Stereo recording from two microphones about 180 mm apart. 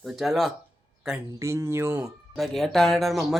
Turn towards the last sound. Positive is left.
turn(degrees=0)  # may be behind; listen again after turning